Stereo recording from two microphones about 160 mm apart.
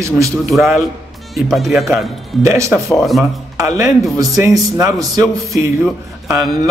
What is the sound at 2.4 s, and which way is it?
Speech, 15° right (ahead or behind).